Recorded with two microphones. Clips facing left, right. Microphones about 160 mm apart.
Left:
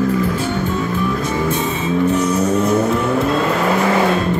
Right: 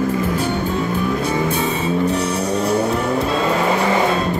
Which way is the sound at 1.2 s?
35° right (ahead or behind).